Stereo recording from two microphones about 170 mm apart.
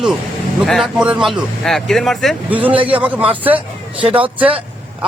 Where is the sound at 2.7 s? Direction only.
30° right (ahead or behind).